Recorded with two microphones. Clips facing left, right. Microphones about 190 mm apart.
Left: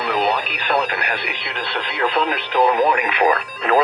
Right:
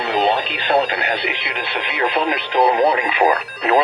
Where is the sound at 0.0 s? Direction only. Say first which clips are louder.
Right 2 dB; 25° right (ahead or behind).